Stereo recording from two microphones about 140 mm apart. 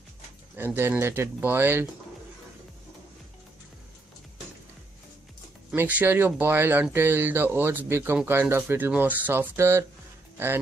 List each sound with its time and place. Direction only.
0.6 s speech: 15° right (ahead or behind)
5.8 s speech: 10° right (ahead or behind)